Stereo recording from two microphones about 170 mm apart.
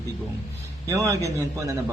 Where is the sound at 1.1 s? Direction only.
20° right (ahead or behind).